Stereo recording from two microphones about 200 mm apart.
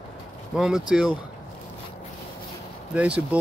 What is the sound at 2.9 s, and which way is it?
Speech, 5° right (ahead or behind).